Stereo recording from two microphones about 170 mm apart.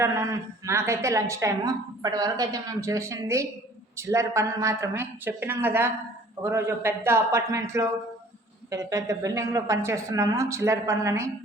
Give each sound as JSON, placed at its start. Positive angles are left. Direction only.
{"t": 0.0, "sound": "a woman's voice", "side_deg": -20}